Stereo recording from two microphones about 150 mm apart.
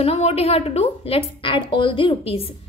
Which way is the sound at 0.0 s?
40° left (ahead or behind).